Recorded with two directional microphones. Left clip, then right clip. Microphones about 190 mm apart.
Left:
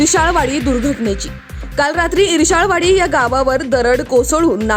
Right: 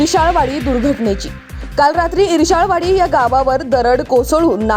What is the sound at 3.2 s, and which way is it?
A woman's voice, 20° left (ahead or behind).